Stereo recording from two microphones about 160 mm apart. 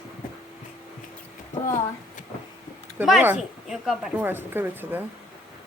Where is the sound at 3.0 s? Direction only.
5° right (ahead or behind).